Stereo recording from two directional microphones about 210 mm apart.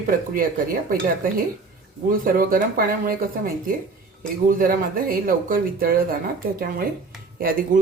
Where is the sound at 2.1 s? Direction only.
45° right (ahead or behind).